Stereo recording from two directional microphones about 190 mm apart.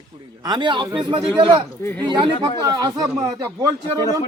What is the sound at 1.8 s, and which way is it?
Speech, 10° left (ahead or behind).